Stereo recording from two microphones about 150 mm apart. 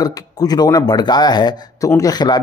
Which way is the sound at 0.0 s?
25° left (ahead or behind).